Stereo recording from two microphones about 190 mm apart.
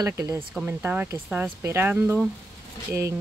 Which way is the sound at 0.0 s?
15° right (ahead or behind).